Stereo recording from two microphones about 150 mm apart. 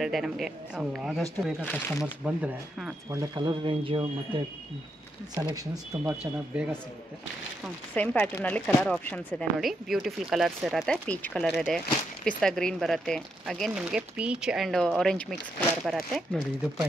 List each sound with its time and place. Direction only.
0.0 s speech: centre (ahead or behind)
1.6 s speech: 10° left (ahead or behind)
2.0 s speech: 10° right (ahead or behind)
3.1 s speech: 25° right (ahead or behind)
5.3 s speech: 25° right (ahead or behind)
6.5 s speech: 10° right (ahead or behind)
7.9 s speech: 10° left (ahead or behind)
9.6 s speech: centre (ahead or behind)